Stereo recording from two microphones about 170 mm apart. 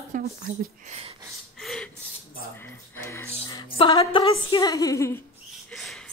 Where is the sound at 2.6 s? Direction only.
15° left (ahead or behind).